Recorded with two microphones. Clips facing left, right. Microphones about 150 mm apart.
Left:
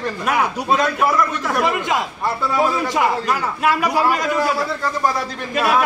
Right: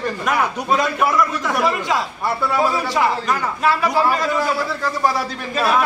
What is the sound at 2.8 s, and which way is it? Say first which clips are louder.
A man's voice: even; 15° left (ahead or behind).